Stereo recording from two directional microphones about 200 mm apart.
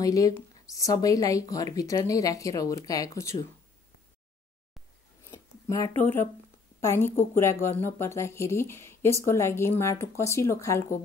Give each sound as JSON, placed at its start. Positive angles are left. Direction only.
{"t": 0.0, "sound": "speech", "side_deg": 15}
{"t": 5.2, "sound": "a sound", "side_deg": 15}
{"t": 6.8, "sound": "a woman's voice", "side_deg": 10}